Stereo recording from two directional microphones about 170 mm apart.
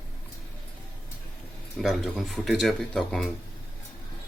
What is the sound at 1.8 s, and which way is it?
Speech, centre (ahead or behind).